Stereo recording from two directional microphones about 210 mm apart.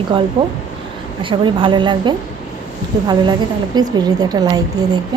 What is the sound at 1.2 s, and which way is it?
A woman's voice, 25° right (ahead or behind).